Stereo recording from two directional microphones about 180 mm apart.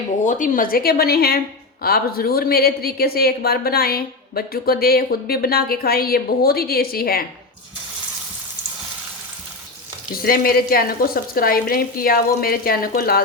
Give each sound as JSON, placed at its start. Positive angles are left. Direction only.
{"t": 0.3, "sound": "a woman's voice", "side_deg": 45}
{"t": 10.2, "sound": "a woman's voice", "side_deg": 55}